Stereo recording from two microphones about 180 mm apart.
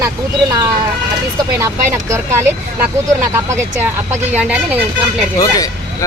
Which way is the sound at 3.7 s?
10° right (ahead or behind).